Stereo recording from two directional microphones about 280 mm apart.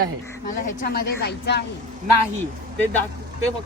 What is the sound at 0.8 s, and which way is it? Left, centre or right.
Speech, left.